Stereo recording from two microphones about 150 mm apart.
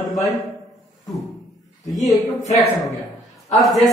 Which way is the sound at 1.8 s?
Centre (ahead or behind).